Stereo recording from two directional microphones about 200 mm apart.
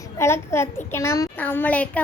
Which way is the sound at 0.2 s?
15° left (ahead or behind).